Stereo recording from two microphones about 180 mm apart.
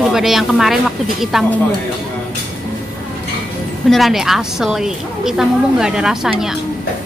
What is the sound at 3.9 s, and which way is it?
A woman's voice, centre (ahead or behind).